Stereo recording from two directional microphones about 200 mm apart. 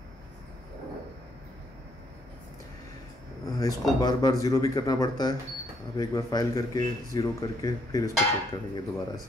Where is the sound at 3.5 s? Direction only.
15° left (ahead or behind).